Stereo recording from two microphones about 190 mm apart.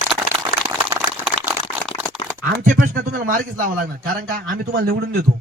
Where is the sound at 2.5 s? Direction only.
45° right (ahead or behind).